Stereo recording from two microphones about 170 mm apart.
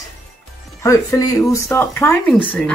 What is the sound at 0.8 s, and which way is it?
Speech, 20° left (ahead or behind).